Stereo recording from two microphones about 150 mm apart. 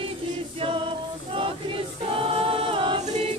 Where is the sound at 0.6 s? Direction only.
35° right (ahead or behind).